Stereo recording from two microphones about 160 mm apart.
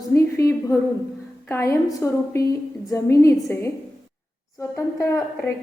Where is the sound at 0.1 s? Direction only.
20° left (ahead or behind).